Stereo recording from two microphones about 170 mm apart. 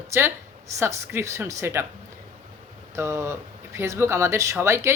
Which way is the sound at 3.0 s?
15° right (ahead or behind).